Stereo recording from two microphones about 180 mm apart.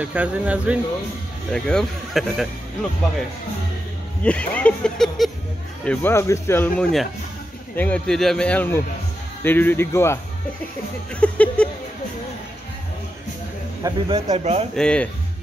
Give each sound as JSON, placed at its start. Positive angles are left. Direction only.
{"t": 0.0, "sound": "speech", "side_deg": -10}
{"t": 1.5, "sound": "speech", "side_deg": 5}
{"t": 4.2, "sound": "speech", "side_deg": 5}
{"t": 5.9, "sound": "speech", "side_deg": 15}
{"t": 11.1, "sound": "a sound", "side_deg": 5}
{"t": 13.8, "sound": "speech", "side_deg": -25}
{"t": 14.8, "sound": "speech", "side_deg": 5}